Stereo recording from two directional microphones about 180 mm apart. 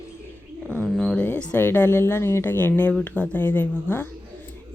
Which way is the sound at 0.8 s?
5° left (ahead or behind).